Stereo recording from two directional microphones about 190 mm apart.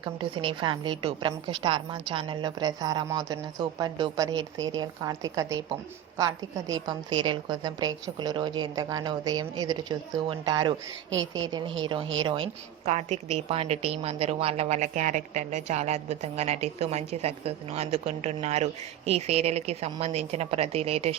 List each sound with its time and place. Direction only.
0.0 s a woman's voice: 25° right (ahead or behind)